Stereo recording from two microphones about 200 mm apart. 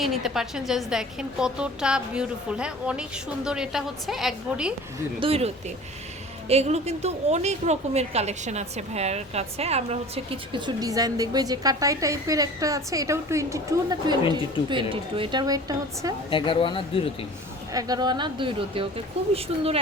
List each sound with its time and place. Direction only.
0.0 s a woman's voice: centre (ahead or behind)
5.2 s a woman's voice: 30° right (ahead or behind)
16.3 s speech: 25° left (ahead or behind)
17.7 s a woman's voice: 20° right (ahead or behind)